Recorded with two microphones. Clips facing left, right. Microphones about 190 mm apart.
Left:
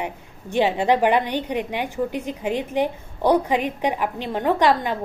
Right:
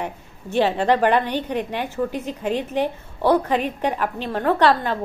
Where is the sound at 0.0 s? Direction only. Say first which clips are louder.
Even; 15° left (ahead or behind).